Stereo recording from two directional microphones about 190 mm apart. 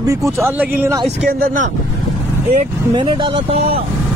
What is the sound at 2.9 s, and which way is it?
Speech, 30° right (ahead or behind).